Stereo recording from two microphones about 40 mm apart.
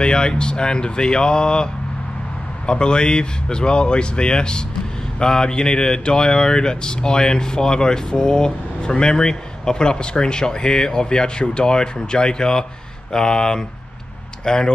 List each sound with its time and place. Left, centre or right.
0.0 s speech: left